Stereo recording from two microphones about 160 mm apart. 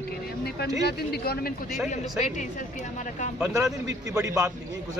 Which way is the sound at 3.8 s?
20° right (ahead or behind).